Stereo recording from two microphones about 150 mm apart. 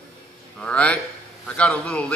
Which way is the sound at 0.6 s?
10° left (ahead or behind).